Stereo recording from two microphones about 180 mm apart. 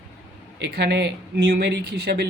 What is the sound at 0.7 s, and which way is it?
Speech, 70° right (ahead or behind).